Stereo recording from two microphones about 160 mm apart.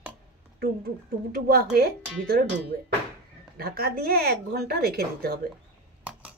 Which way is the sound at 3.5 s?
70° right (ahead or behind).